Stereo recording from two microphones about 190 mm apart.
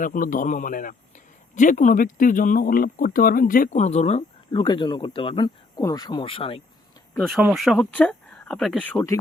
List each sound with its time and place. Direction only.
0.0 s speech: 45° left (ahead or behind)
4.5 s speech: 25° left (ahead or behind)
7.2 s speech: centre (ahead or behind)